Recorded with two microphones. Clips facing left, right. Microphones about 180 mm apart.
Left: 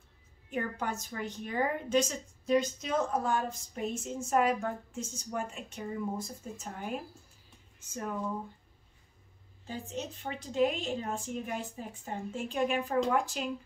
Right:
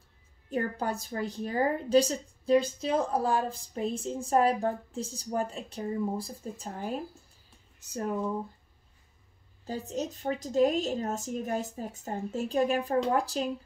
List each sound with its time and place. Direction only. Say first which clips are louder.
0.5 s a woman's voice: right 4 dB; 35° right (ahead or behind)
9.7 s a woman's voice: right 5 dB; 40° right (ahead or behind)